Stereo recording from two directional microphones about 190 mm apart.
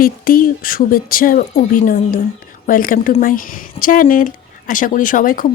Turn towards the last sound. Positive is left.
turn(degrees=45)  # may be behind; listen again after turning